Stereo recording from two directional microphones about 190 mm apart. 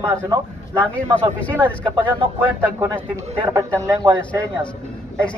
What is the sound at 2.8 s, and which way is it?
Speech, 15° right (ahead or behind).